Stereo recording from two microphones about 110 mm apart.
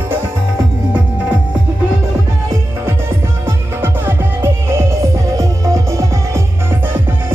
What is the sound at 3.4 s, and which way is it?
Music, 20° right (ahead or behind).